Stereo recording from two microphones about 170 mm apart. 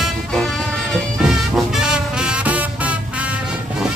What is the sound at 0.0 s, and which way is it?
Music, centre (ahead or behind).